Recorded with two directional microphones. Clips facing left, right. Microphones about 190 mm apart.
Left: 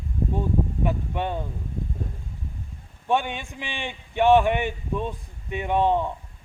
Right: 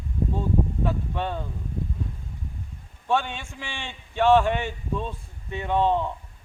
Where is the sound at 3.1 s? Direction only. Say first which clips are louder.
Left 1 dB; 15° left (ahead or behind).